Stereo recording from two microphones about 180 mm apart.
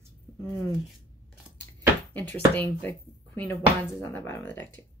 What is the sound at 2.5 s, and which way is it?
Speech, 10° left (ahead or behind).